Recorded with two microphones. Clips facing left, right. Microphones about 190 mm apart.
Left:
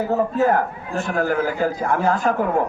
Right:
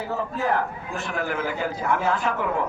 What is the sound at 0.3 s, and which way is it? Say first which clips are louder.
A man's voice: left 6 dB; 45° left (ahead or behind).